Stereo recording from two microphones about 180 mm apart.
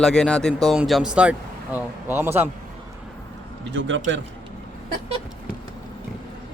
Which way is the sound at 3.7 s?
90° right.